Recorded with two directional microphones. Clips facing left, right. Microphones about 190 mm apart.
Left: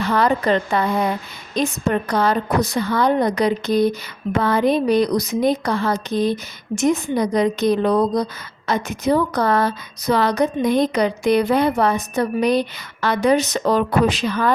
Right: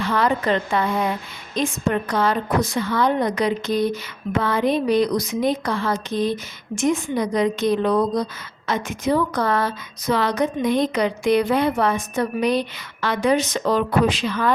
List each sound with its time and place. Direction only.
0.0 s a woman's voice: 40° left (ahead or behind)